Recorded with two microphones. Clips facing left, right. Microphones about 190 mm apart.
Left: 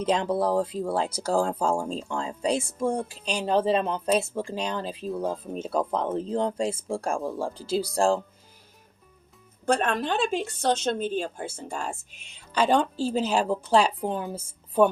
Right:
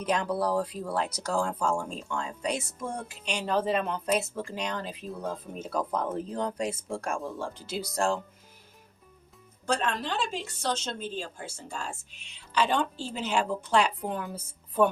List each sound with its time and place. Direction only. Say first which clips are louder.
0.0 s speech: left 4 dB; 25° left (ahead or behind)
5.0 s speech: left 8 dB; centre (ahead or behind)
5.5 s speech: left 3 dB; 25° left (ahead or behind)
9.6 s a woman's voice: left 5 dB; 55° left (ahead or behind); by 14.8 s 30° left (ahead or behind)